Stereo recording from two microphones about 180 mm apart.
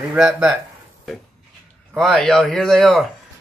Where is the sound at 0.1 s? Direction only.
10° right (ahead or behind).